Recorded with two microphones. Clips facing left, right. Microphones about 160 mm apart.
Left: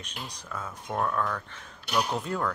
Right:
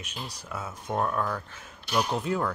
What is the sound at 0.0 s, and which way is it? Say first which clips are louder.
Speech: right 1 dB; 10° right (ahead or behind).